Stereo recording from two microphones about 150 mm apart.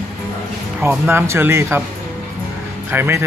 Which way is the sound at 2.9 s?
15° right (ahead or behind).